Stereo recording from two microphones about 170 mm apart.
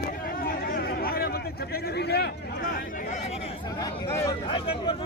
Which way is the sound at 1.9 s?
75° left (ahead or behind).